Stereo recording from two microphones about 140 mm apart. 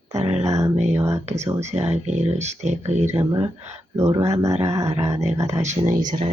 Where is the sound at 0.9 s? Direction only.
20° right (ahead or behind).